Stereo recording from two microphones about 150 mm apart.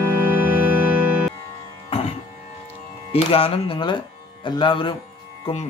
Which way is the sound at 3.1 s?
40° left (ahead or behind).